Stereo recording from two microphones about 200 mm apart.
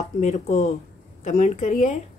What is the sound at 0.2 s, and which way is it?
A woman's voice, 35° left (ahead or behind).